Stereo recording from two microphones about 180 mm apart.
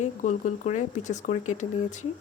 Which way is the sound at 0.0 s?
40° left (ahead or behind).